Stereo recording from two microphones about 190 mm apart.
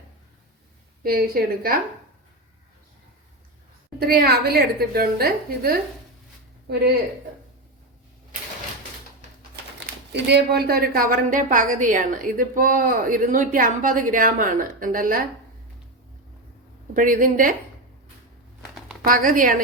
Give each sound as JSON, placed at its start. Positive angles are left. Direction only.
{"t": 1.0, "sound": "a woman's voice", "side_deg": -55}
{"t": 4.0, "sound": "a woman's voice", "side_deg": -55}
{"t": 9.8, "sound": "a woman's voice", "side_deg": -60}
{"t": 16.9, "sound": "a woman's voice", "side_deg": -45}
{"t": 19.0, "sound": "a woman's voice", "side_deg": -45}